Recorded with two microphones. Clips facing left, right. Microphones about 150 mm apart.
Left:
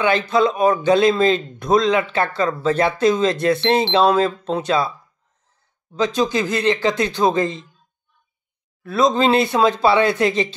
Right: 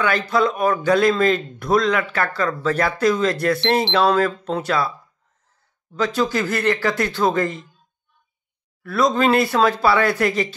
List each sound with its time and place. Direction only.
0.0 s speech: 25° left (ahead or behind)
5.9 s speech: 20° left (ahead or behind)
8.8 s speech: 20° left (ahead or behind)